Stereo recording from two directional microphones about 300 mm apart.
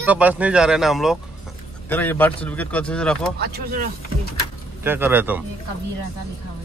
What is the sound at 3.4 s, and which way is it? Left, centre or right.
Speech, right.